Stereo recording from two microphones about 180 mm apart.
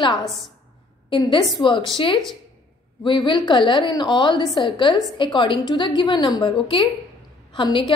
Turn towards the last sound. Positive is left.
turn(degrees=25)  # may be behind; listen again after turning